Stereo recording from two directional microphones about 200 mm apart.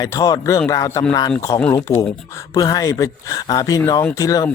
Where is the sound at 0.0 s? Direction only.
20° left (ahead or behind).